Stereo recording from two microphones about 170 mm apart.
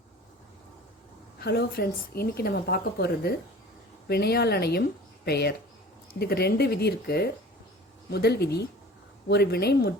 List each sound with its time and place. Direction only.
1.4 s a woman's voice: 70° left (ahead or behind)